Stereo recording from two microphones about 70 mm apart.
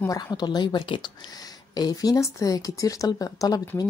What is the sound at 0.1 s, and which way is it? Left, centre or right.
A woman's voice, left.